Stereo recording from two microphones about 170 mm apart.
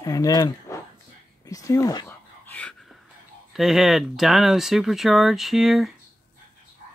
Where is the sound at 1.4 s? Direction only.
20° left (ahead or behind).